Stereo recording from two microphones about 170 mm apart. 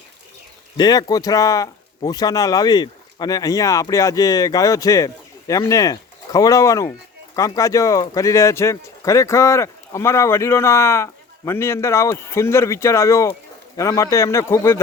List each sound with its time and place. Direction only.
0.8 s speech: 25° left (ahead or behind)